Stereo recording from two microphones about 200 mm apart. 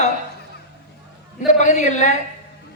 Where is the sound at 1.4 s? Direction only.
35° left (ahead or behind).